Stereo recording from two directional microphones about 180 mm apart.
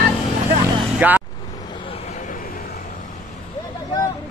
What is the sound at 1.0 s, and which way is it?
Speech, 10° right (ahead or behind).